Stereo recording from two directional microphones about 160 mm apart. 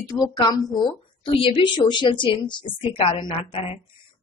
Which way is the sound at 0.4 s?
25° left (ahead or behind).